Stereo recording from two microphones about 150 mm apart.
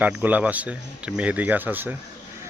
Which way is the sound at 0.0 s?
10° right (ahead or behind).